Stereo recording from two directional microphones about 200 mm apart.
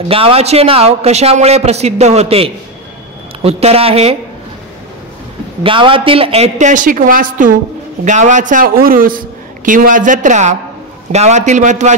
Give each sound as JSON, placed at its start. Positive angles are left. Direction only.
{"t": 0.1, "sound": "a man's voice", "side_deg": -30}
{"t": 5.6, "sound": "a man's voice", "side_deg": -25}